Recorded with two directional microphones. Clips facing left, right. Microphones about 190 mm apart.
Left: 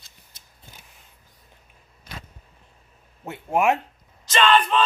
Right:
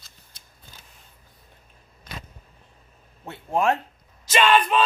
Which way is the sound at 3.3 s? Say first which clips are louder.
Left 2 dB; 15° left (ahead or behind).